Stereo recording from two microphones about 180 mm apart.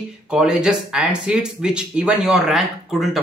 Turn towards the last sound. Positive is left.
turn(degrees=0)  # may be behind; listen again after turning